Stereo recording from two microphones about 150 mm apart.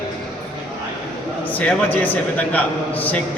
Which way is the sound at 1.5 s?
10° left (ahead or behind).